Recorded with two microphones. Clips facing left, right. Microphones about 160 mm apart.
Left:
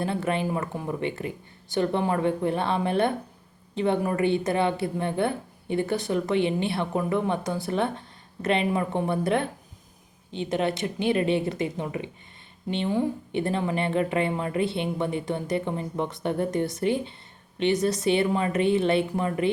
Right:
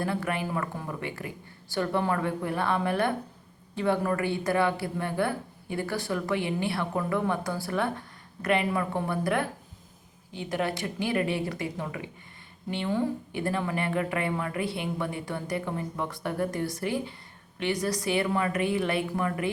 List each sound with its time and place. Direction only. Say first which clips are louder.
0.0 s a woman's voice: left 3 dB; 25° left (ahead or behind)